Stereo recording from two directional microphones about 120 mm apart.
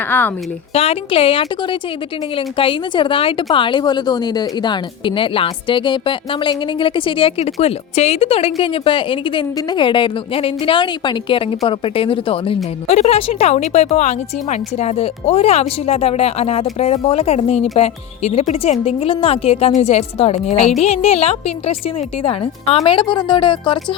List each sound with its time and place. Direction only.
0.1 s speech: 15° left (ahead or behind)
0.7 s a woman's voice: 55° left (ahead or behind)
12.9 s a woman's voice: 60° left (ahead or behind); by 23.8 s 45° left (ahead or behind)